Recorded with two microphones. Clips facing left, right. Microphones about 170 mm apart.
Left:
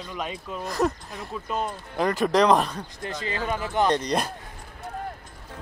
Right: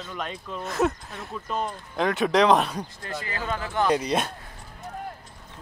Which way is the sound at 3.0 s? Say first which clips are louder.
Left 4 dB; 20° left (ahead or behind).